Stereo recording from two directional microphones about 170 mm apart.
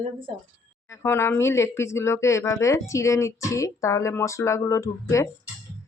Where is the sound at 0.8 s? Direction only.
15° left (ahead or behind).